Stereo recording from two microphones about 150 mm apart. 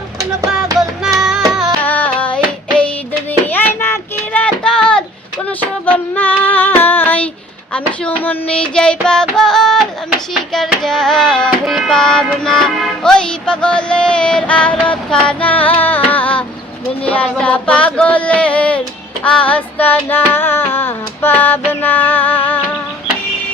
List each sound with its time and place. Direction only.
1.0 s music: 5° right (ahead or behind)
1.8 s a sound: 10° left (ahead or behind)
3.4 s music: 15° left (ahead or behind)
5.8 s female singing: 10° left (ahead or behind)
7.7 s music: 10° left (ahead or behind)
17.1 s a sound: 10° left (ahead or behind)
19.2 s child singing: 10° left (ahead or behind)